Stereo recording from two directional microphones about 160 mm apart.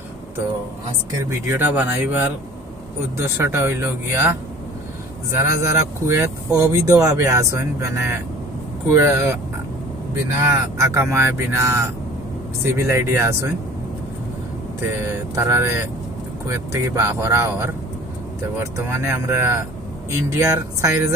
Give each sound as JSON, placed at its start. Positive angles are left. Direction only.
{"t": 1.3, "sound": "speech", "side_deg": -10}
{"t": 5.4, "sound": "speech", "side_deg": -20}
{"t": 10.4, "sound": "speech", "side_deg": -15}
{"t": 15.0, "sound": "speech", "side_deg": -20}